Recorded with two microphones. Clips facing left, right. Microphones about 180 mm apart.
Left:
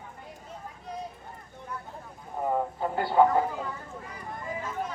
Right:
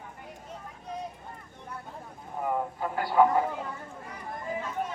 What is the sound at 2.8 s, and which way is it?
Speech, 25° left (ahead or behind).